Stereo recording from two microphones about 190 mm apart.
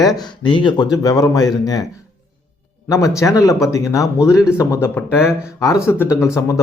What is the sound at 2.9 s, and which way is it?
Speech, 15° left (ahead or behind).